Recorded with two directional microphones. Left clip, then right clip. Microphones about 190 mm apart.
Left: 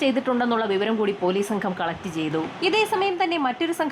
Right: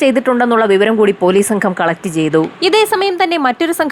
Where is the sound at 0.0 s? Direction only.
35° right (ahead or behind).